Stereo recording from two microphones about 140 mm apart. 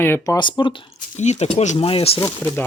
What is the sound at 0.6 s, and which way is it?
Speech, 30° left (ahead or behind).